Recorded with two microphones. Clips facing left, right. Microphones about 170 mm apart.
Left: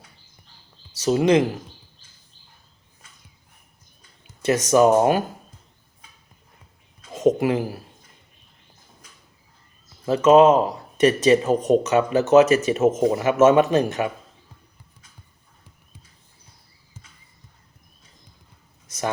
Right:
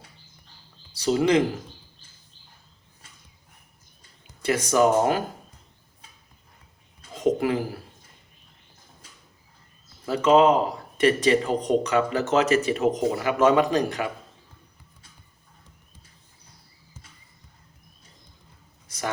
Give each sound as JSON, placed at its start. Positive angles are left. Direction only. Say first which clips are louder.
{"t": 1.0, "sound": "speech", "louder": "left 3 dB", "side_deg": 20}
{"t": 4.4, "sound": "speech", "louder": "left 4 dB", "side_deg": 20}
{"t": 7.1, "sound": "a sound", "louder": "left 4 dB", "side_deg": 25}
{"t": 10.1, "sound": "speech", "louder": "left 4 dB", "side_deg": 25}